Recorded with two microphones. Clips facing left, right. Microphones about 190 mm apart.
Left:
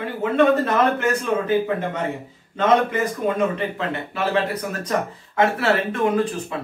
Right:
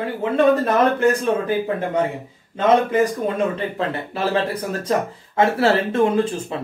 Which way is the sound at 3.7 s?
35° right (ahead or behind).